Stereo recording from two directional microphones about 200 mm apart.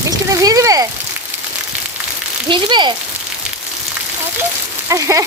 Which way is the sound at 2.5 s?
20° right (ahead or behind).